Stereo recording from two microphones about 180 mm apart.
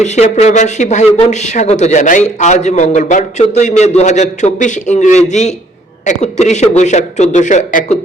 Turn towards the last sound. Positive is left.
turn(degrees=45)  # may be behind; listen again after turning